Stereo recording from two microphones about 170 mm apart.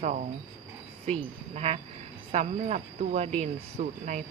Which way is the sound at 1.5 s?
35° right (ahead or behind).